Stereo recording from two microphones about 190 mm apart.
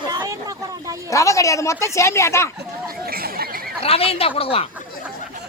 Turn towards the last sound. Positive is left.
turn(degrees=30)  # may be behind; listen again after turning